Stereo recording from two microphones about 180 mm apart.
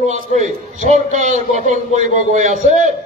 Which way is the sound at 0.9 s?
40° right (ahead or behind).